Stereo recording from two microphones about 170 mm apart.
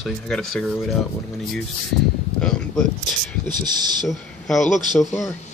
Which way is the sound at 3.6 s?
25° right (ahead or behind).